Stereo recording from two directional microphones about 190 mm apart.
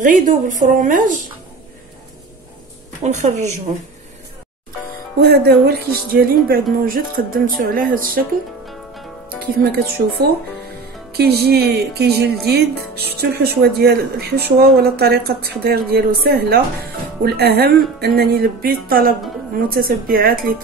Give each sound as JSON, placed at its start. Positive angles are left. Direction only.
{"t": 0.0, "sound": "speech", "side_deg": -45}
{"t": 3.0, "sound": "a woman's voice", "side_deg": -40}
{"t": 5.2, "sound": "speech", "side_deg": -55}
{"t": 9.6, "sound": "speech", "side_deg": -55}